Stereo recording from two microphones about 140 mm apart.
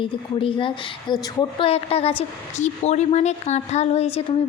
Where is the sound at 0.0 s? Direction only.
40° left (ahead or behind).